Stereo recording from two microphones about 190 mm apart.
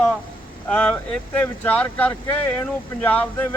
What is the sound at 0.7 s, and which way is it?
Speech, 5° left (ahead or behind).